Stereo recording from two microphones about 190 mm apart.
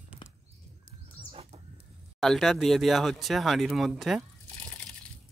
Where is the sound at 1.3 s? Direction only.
30° right (ahead or behind).